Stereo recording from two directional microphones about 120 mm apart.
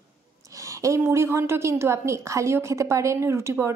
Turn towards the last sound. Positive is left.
turn(degrees=-20)  # may be behind; listen again after turning